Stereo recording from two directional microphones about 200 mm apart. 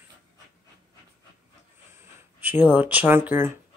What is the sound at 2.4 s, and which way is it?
A woman's voice, 10° right (ahead or behind).